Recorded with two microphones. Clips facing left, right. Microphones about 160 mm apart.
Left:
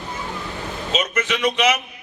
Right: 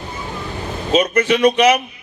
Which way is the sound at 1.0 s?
35° right (ahead or behind).